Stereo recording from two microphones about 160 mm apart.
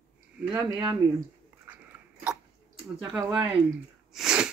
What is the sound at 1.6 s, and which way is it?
Biting, 10° right (ahead or behind).